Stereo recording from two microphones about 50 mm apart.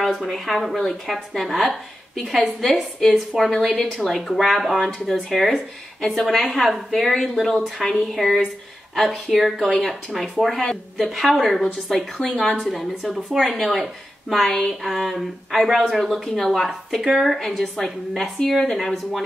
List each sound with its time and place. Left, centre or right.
0.0 s a woman's voice: centre
11.0 s a woman's voice: centre
12.4 s a woman's voice: left
12.7 s a woman's voice: centre